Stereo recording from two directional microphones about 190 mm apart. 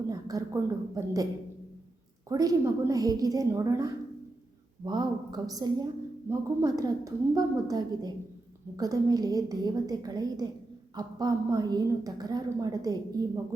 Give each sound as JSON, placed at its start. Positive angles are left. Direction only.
{"t": 0.1, "sound": "a woman's voice", "side_deg": -20}
{"t": 2.3, "sound": "a woman's voice", "side_deg": -20}